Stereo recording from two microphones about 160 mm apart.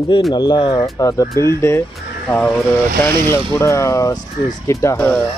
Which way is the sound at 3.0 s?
15° left (ahead or behind).